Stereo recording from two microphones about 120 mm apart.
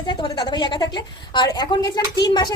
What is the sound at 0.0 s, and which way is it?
A woman's voice, 40° left (ahead or behind).